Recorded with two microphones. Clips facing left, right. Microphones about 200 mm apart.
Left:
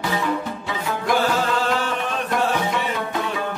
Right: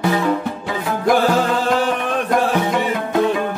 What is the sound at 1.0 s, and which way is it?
Music, 45° right (ahead or behind).